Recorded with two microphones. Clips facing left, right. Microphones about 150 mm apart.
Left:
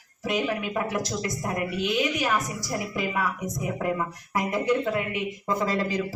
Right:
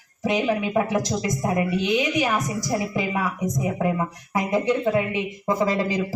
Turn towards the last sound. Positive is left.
turn(degrees=-15)  # may be behind; listen again after turning